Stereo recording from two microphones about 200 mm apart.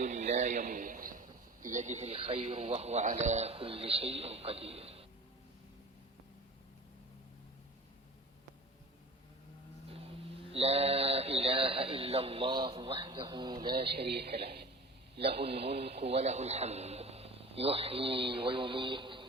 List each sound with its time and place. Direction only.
0.0 s a man's voice: 35° right (ahead or behind)
9.9 s speech: 30° right (ahead or behind)
13.9 s a man's voice: 55° right (ahead or behind)
16.0 s speech: 35° right (ahead or behind)